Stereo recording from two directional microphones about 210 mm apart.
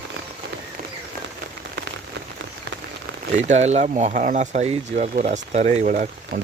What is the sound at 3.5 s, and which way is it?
Speech, 30° right (ahead or behind).